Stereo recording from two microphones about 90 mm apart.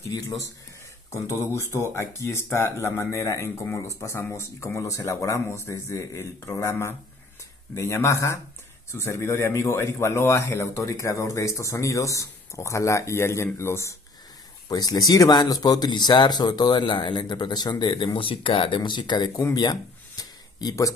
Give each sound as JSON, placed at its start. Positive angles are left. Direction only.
{"t": 1.4, "sound": "speech", "side_deg": 30}
{"t": 14.7, "sound": "speech", "side_deg": 45}
{"t": 18.0, "sound": "speech", "side_deg": 80}
{"t": 19.5, "sound": "a sound", "side_deg": 45}